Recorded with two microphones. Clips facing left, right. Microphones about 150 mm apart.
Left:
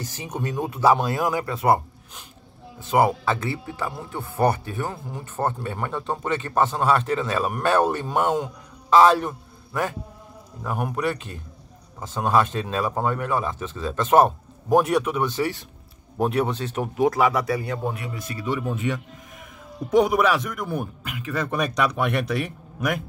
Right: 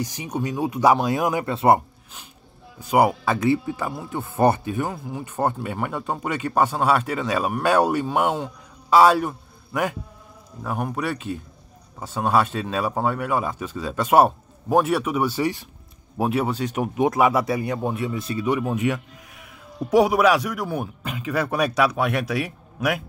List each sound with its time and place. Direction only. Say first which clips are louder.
0.0 s speech: right 3 dB; 15° right (ahead or behind)
2.8 s speech: right 1 dB; 10° right (ahead or behind)
10.6 s a man's voice: left 1 dB; centre (ahead or behind); by 18.6 s 20° right (ahead or behind)
19.9 s speech: right 2 dB; 10° right (ahead or behind)
21.0 s speech: right 3 dB; 25° right (ahead or behind)
21.3 s speech: right 3 dB; 10° right (ahead or behind)